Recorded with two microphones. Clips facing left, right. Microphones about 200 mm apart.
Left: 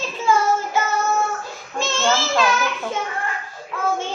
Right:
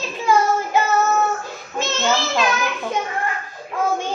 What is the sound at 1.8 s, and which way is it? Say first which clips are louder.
Speech: even; 20° right (ahead or behind).